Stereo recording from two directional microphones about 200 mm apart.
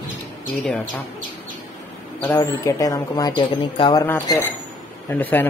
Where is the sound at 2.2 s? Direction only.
15° left (ahead or behind).